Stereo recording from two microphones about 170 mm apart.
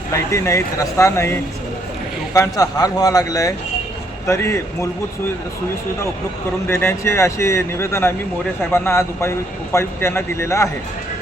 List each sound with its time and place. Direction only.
0.1 s a man's voice: 15° left (ahead or behind)
6.7 s speech: 15° left (ahead or behind)